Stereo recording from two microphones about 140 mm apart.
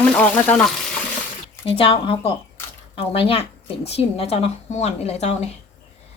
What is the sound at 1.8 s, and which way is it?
Speech, 40° left (ahead or behind).